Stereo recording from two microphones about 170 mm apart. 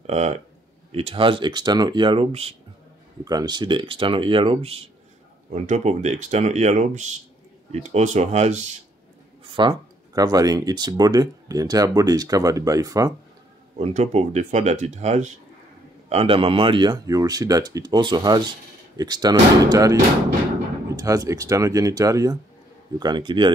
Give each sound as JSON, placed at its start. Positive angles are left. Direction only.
{"t": 0.0, "sound": "speech", "side_deg": -40}
{"t": 3.3, "sound": "speech", "side_deg": -25}
{"t": 9.5, "sound": "speech", "side_deg": -25}
{"t": 13.7, "sound": "speech", "side_deg": -40}